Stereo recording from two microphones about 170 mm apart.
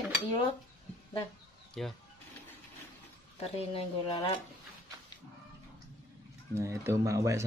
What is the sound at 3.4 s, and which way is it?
Speech, 35° left (ahead or behind).